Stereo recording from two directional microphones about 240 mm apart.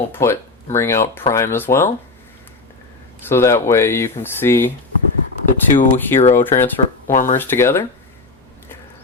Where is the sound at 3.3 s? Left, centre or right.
Centre.